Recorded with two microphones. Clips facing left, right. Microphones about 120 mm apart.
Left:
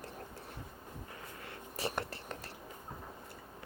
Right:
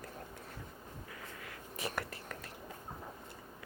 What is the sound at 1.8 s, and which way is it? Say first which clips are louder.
Whispering: left 2 dB; 30° left (ahead or behind).